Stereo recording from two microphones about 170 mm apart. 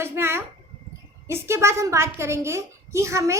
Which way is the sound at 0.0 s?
15° right (ahead or behind).